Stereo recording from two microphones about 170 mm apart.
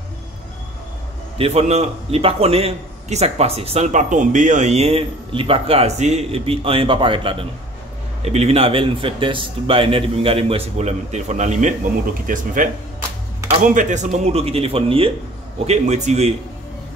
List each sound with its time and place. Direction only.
1.4 s a man's voice: 40° right (ahead or behind)
13.7 s a man's voice: 45° right (ahead or behind)